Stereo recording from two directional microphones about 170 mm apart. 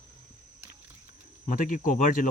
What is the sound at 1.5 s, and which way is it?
Speech, 55° left (ahead or behind).